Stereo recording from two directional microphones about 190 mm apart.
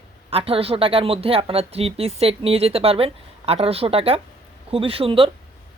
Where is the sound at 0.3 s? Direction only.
30° right (ahead or behind).